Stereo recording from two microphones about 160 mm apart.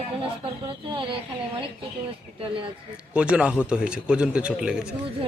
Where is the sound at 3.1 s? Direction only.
5° right (ahead or behind).